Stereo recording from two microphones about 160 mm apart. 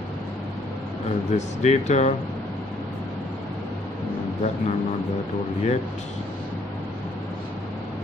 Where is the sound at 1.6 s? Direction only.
45° left (ahead or behind).